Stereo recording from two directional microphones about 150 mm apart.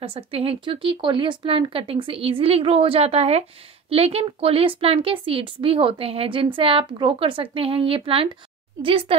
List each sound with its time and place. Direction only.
0.0 s a woman's voice: 40° right (ahead or behind)